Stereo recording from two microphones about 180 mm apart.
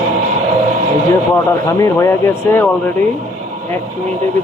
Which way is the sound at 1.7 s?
15° left (ahead or behind).